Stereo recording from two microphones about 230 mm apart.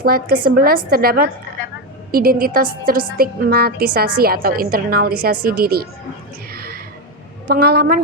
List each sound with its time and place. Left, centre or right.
0.0 s a woman's voice: right
6.5 s a sound: right
7.4 s a woman's voice: right